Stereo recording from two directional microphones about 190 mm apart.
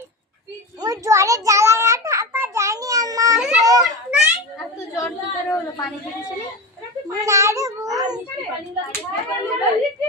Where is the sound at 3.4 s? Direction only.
Centre (ahead or behind).